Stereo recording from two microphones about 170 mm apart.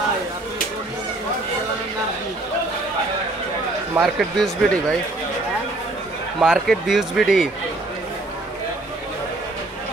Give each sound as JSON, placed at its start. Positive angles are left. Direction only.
{"t": 4.0, "sound": "speech", "side_deg": 0}
{"t": 6.4, "sound": "speech", "side_deg": -5}